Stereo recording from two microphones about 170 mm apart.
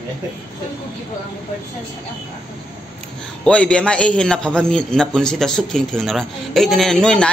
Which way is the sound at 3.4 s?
5° left (ahead or behind).